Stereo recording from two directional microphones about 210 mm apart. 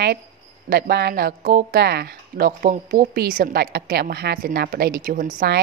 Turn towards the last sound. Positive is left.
turn(degrees=-45)  # may be behind; listen again after turning